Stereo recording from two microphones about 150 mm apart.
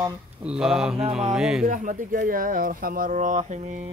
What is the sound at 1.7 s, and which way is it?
Speech, 60° right (ahead or behind).